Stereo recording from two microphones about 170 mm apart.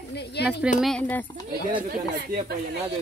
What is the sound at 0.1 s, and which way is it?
Speech, 80° left.